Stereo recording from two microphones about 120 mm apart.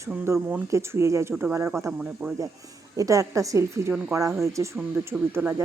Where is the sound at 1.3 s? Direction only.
10° right (ahead or behind).